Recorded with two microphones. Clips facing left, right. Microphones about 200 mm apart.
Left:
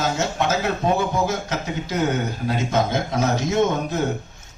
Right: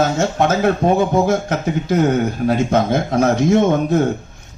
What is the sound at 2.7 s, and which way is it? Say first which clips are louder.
Speech: right 5 dB; 55° right (ahead or behind).